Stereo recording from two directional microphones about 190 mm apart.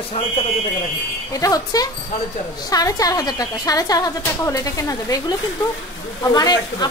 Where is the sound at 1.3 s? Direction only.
20° left (ahead or behind).